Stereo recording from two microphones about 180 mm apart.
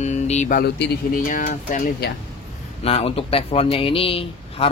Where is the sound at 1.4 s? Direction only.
35° left (ahead or behind).